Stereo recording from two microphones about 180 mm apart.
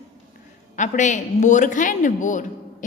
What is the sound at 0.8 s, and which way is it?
A woman's voice, 45° left (ahead or behind).